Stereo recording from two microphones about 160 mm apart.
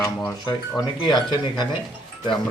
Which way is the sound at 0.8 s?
25° left (ahead or behind).